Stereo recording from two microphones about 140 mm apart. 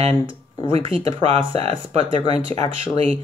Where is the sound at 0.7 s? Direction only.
40° right (ahead or behind).